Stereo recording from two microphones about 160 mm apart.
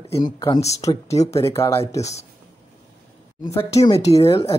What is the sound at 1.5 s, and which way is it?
Speech, 15° left (ahead or behind).